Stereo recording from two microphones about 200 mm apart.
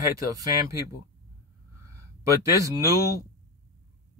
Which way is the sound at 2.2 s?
15° right (ahead or behind).